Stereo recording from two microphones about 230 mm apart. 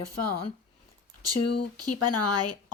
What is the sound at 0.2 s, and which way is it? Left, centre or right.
Speech, left.